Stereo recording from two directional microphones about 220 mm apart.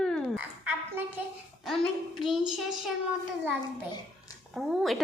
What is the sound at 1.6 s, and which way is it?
Speech, centre (ahead or behind).